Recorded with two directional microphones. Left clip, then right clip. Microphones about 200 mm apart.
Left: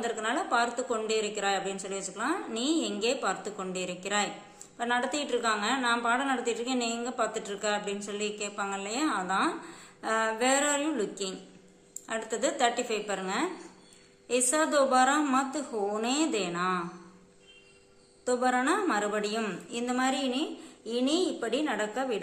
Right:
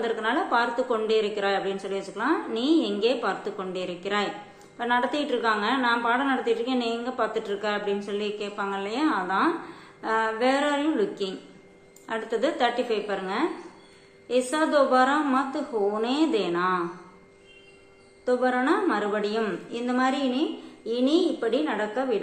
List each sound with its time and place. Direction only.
0.0 s a woman's voice: 20° left (ahead or behind)
18.2 s a woman's voice: 25° left (ahead or behind)